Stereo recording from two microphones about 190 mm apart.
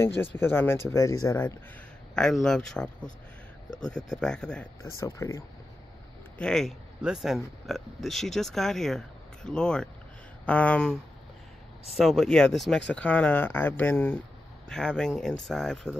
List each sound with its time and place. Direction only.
0.0 s speech: 10° left (ahead or behind)
2.1 s speech: 5° left (ahead or behind)
5.0 s speech: 15° left (ahead or behind)
6.3 s speech: 5° left (ahead or behind)